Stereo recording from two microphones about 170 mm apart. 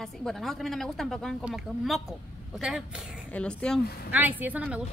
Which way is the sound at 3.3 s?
5° left (ahead or behind).